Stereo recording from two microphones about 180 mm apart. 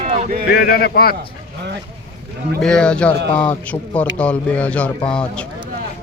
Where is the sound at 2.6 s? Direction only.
5° left (ahead or behind).